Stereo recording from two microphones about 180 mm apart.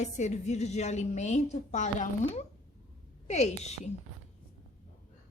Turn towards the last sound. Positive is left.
turn(degrees=40)  # may be behind; listen again after turning